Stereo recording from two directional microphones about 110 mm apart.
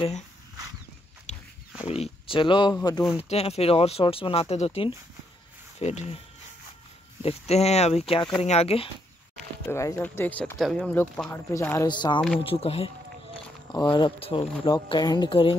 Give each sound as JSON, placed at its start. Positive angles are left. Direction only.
{"t": 1.3, "sound": "pig", "side_deg": 90}
{"t": 1.9, "sound": "speech", "side_deg": 60}
{"t": 3.2, "sound": "speech", "side_deg": 70}
{"t": 5.8, "sound": "speech", "side_deg": 85}
{"t": 7.2, "sound": "speech", "side_deg": 75}
{"t": 9.7, "sound": "speech", "side_deg": 25}
{"t": 10.1, "sound": "speech", "side_deg": 15}
{"t": 10.6, "sound": "speech", "side_deg": 5}
{"t": 11.2, "sound": "speech", "side_deg": 20}
{"t": 11.9, "sound": "speech", "side_deg": 45}
{"t": 12.4, "sound": "speech", "side_deg": 65}
{"t": 13.7, "sound": "speech", "side_deg": 45}